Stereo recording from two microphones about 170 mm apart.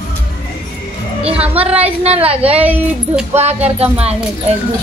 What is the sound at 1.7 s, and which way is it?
Speech, 35° right (ahead or behind).